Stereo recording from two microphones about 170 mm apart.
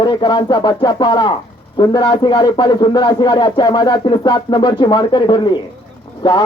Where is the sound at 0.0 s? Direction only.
25° left (ahead or behind).